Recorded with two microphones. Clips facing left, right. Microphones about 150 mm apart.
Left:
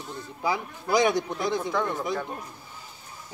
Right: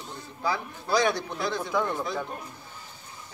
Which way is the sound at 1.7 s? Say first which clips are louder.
Even; 5° right (ahead or behind).